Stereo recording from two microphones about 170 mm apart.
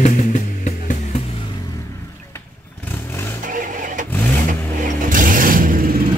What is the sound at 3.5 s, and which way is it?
Vehicle, 50° right (ahead or behind).